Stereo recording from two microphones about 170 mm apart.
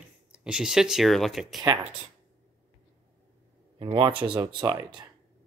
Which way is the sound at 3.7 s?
30° right (ahead or behind).